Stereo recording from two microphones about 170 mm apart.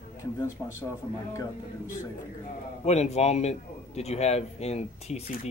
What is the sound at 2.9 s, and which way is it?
Speech, 40° left (ahead or behind).